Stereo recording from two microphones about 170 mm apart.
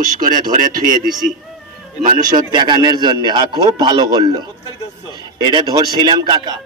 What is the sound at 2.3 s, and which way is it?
A man's voice, 25° right (ahead or behind).